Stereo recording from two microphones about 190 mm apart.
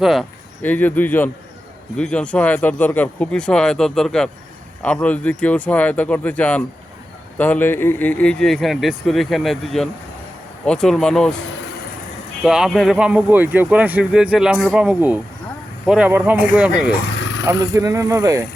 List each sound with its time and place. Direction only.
0.0 s speech: centre (ahead or behind)
12.4 s speech: 5° right (ahead or behind)
17.4 s speech: 15° right (ahead or behind)